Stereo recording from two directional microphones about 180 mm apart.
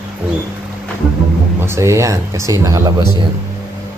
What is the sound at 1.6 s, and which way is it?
Speech, 15° right (ahead or behind).